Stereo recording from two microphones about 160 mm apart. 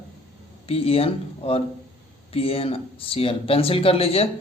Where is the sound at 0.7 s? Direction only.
35° left (ahead or behind).